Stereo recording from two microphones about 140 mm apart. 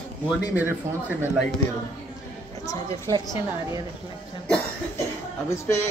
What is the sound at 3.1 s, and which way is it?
Speech, 20° left (ahead or behind).